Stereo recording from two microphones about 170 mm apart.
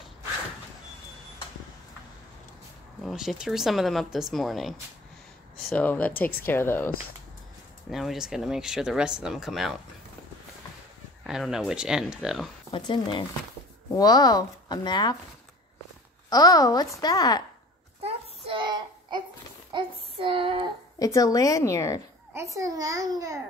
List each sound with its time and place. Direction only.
3.0 s speech: centre (ahead or behind)
7.9 s speech: centre (ahead or behind)
11.2 s speech: 5° right (ahead or behind)
12.7 s speech: 30° left (ahead or behind)
16.3 s speech: 20° left (ahead or behind)
18.0 s a sound: 35° right (ahead or behind)
19.7 s child singing: 30° right (ahead or behind)
21.0 s speech: 20° left (ahead or behind)
22.3 s a child's voice: 15° right (ahead or behind)